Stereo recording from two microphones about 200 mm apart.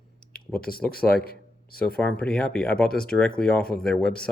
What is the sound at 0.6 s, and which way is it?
Speech, 45° left (ahead or behind).